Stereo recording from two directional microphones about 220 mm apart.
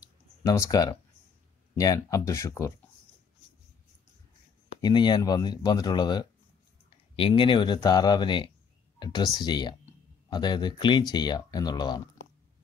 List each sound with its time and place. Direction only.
0.4 s speech: 15° left (ahead or behind)
4.8 s speech: 20° left (ahead or behind)